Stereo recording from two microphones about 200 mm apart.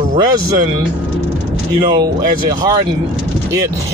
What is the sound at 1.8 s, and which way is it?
Speech, 20° right (ahead or behind).